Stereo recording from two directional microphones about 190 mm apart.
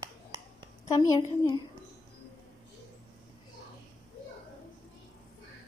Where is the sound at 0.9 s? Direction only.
15° left (ahead or behind).